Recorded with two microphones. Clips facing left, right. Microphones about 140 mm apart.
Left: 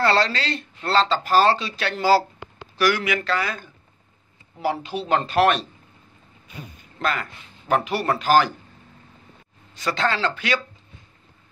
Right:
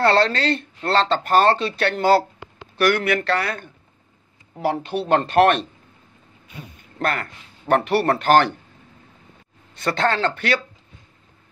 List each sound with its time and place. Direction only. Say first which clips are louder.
0.0 s speech: right 3 dB; 60° right (ahead or behind)
4.8 s speech: right 3 dB; 55° right (ahead or behind)
7.0 s speech: right 1 dB; 60° right (ahead or behind)
9.8 s speech: right 3 dB; 60° right (ahead or behind)